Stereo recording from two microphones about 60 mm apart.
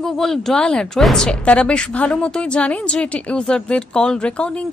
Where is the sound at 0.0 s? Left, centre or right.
Centre.